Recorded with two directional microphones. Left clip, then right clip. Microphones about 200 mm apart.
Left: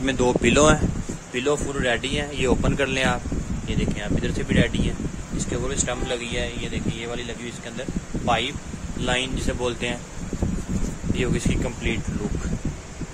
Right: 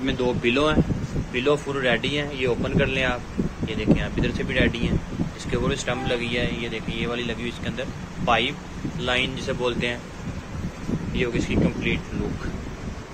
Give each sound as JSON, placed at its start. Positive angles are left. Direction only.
{"t": 0.0, "sound": "speech", "side_deg": 35}
{"t": 1.3, "sound": "speech", "side_deg": 20}
{"t": 2.3, "sound": "speech", "side_deg": 35}
{"t": 3.6, "sound": "speech", "side_deg": 15}
{"t": 11.1, "sound": "speech", "side_deg": 30}